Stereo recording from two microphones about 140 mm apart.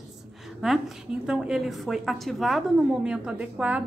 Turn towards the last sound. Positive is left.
turn(degrees=-10)  # may be behind; listen again after turning